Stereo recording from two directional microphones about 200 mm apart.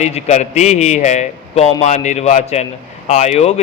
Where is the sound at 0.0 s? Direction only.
35° left (ahead or behind).